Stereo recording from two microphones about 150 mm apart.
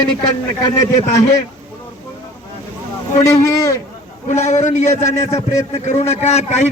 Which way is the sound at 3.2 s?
20° left (ahead or behind).